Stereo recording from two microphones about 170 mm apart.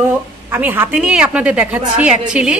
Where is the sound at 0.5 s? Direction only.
10° right (ahead or behind).